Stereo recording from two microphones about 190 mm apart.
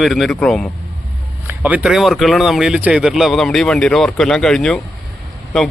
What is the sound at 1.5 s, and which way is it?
Speech, 10° right (ahead or behind).